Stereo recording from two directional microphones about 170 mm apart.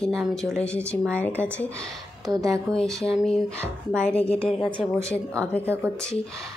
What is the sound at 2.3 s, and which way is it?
Speech, 20° right (ahead or behind).